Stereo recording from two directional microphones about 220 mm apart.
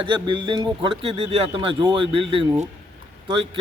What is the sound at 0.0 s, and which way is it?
Speech, 20° right (ahead or behind).